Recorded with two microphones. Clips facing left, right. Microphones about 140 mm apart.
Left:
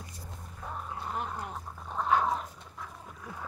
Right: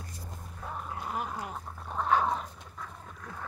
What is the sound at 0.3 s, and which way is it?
Music, centre (ahead or behind).